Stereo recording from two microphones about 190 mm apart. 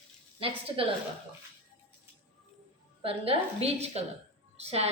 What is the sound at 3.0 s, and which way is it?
A woman's voice, 30° right (ahead or behind).